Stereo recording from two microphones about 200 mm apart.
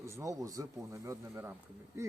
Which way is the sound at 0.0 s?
15° right (ahead or behind).